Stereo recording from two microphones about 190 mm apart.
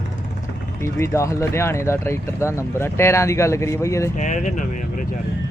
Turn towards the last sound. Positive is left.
turn(degrees=40)  # may be behind; listen again after turning